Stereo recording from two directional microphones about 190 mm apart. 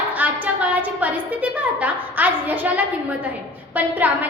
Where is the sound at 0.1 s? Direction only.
10° right (ahead or behind).